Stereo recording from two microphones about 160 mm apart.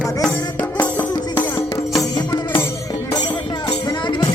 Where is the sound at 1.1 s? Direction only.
25° left (ahead or behind).